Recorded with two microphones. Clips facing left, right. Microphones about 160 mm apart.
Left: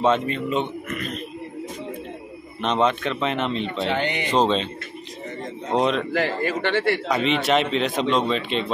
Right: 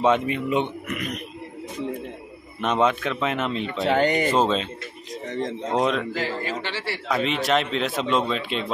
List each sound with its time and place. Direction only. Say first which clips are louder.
0.0 s speech: even; 10° right (ahead or behind)
2.6 s a man's voice: even; 5° right (ahead or behind)
3.6 s speech: right 3 dB; 45° right (ahead or behind)
4.3 s a man's voice: left 1 dB; 5° right (ahead or behind)
5.8 s a man's voice: left 2 dB; 5° right (ahead or behind)
6.1 s a man's voice: left 5 dB; 55° left (ahead or behind)
7.1 s a man's voice: left 2 dB; centre (ahead or behind)